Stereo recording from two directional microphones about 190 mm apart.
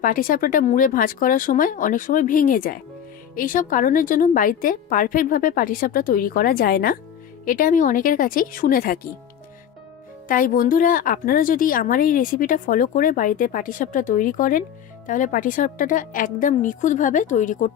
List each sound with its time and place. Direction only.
0.0 s a woman's voice: 45° left (ahead or behind)
10.2 s a woman's voice: 45° left (ahead or behind)